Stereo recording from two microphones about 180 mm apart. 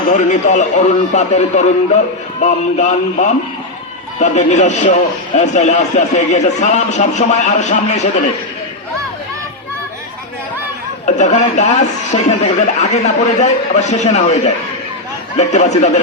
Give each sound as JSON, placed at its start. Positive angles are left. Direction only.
{"t": 0.1, "sound": "speech", "side_deg": 40}
{"t": 11.0, "sound": "speech", "side_deg": 40}